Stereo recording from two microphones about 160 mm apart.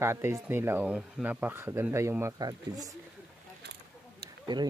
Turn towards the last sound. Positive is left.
turn(degrees=-25)  # may be behind; listen again after turning